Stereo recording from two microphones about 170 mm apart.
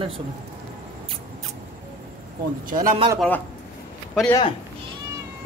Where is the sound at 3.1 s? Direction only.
10° left (ahead or behind).